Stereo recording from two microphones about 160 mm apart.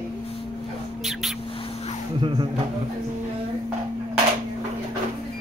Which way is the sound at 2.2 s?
30° right (ahead or behind).